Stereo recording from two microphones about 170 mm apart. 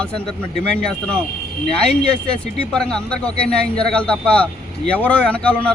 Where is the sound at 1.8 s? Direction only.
5° left (ahead or behind).